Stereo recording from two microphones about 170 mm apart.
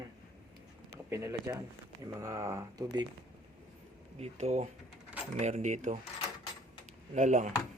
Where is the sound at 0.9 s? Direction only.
15° right (ahead or behind).